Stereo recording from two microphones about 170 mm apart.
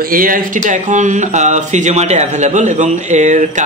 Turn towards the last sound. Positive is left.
turn(degrees=-45)  # may be behind; listen again after turning